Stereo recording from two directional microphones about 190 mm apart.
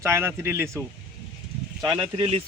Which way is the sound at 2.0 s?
30° right (ahead or behind).